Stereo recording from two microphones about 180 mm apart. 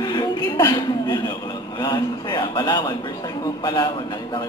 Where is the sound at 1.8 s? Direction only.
25° left (ahead or behind).